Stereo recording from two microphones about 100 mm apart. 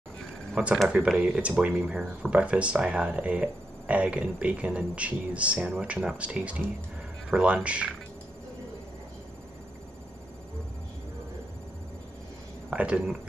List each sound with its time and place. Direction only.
0.8 s speech: 10° right (ahead or behind)
12.6 s speech: 10° right (ahead or behind)